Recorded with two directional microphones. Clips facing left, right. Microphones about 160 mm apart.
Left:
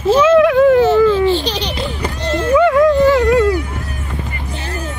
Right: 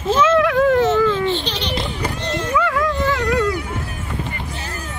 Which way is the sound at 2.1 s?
30° left (ahead or behind).